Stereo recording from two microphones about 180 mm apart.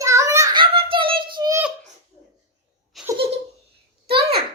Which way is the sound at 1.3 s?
20° right (ahead or behind).